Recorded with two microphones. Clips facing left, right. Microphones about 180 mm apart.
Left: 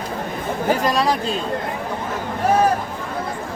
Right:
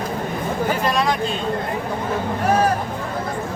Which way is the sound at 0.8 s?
35° left (ahead or behind).